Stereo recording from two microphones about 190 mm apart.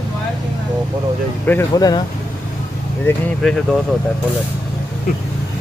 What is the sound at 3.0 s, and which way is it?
Speech, 5° left (ahead or behind).